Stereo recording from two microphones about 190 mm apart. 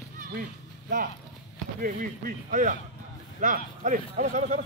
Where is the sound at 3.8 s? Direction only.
45° right (ahead or behind).